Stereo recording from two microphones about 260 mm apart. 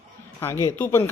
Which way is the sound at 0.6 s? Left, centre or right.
Centre.